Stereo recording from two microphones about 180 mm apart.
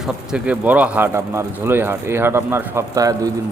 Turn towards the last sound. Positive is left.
turn(degrees=-20)  # may be behind; listen again after turning